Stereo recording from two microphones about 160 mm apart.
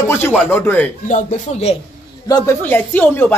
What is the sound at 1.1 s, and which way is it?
Speech, 45° left (ahead or behind).